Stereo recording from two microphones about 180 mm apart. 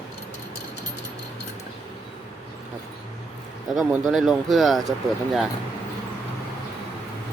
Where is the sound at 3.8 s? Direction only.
5° right (ahead or behind).